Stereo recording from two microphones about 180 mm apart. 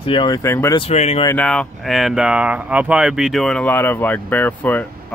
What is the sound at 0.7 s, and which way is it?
Speech, 35° left (ahead or behind).